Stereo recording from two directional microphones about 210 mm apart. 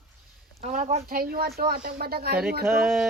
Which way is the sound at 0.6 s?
35° right (ahead or behind).